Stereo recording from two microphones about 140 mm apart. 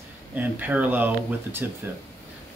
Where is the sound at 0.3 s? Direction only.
10° right (ahead or behind).